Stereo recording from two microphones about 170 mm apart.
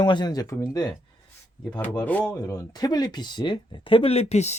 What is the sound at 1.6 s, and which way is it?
Speech, 10° left (ahead or behind).